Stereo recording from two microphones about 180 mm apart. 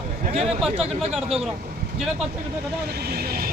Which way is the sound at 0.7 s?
35° right (ahead or behind).